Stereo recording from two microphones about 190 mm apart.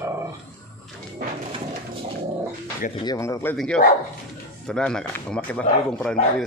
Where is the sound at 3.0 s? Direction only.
20° left (ahead or behind).